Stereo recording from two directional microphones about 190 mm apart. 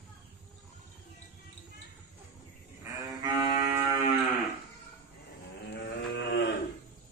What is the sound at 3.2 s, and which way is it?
Music, 20° right (ahead or behind).